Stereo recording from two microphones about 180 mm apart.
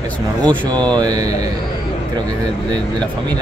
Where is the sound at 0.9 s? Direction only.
20° right (ahead or behind).